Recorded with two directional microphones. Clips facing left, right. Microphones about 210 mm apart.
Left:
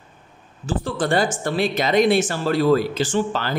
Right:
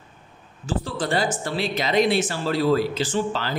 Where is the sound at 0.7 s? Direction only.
50° left (ahead or behind).